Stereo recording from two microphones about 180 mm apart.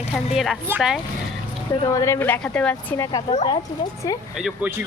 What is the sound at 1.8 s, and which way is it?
Speech, 15° left (ahead or behind).